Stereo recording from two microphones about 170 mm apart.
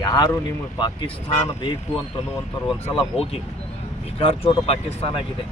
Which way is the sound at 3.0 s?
35° left (ahead or behind).